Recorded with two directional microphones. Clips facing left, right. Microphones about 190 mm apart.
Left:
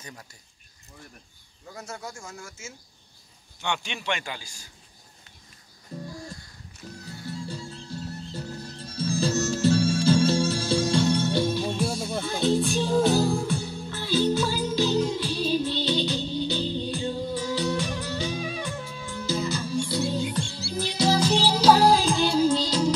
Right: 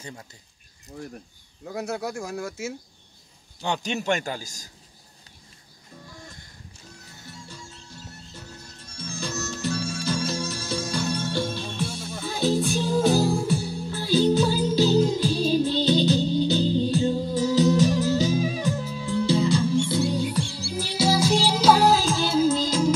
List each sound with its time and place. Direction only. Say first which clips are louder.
1.7 s speech: right 9 dB; 65° right (ahead or behind)
3.6 s a man's voice: right 4 dB; 40° right (ahead or behind)
5.9 s music: left 9 dB; 30° left (ahead or behind)
8.3 s music: left 8 dB; 35° left (ahead or behind); by 11.8 s 10° left (ahead or behind)
12.3 s music: right 1 dB; 5° right (ahead or behind)
14.6 s music: right 4 dB; 35° right (ahead or behind)
20.2 s music: right 2 dB; 10° right (ahead or behind)